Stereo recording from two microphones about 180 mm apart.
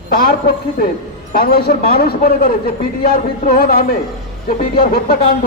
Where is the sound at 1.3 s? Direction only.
50° left (ahead or behind).